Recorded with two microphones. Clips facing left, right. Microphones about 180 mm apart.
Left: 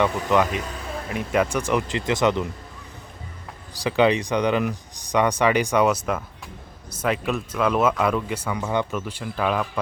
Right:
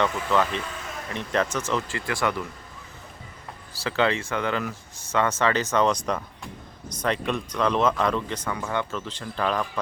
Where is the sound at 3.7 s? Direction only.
15° left (ahead or behind).